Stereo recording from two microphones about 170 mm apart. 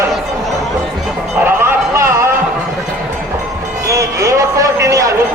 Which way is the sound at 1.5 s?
15° right (ahead or behind).